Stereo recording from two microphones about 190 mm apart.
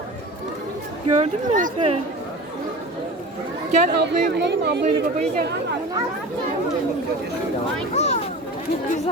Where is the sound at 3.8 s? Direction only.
60° right (ahead or behind).